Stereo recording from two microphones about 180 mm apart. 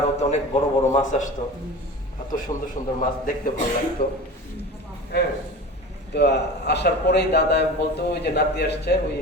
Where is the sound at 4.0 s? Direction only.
60° left (ahead or behind).